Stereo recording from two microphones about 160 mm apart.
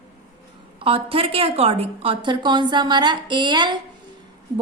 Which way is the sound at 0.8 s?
35° right (ahead or behind).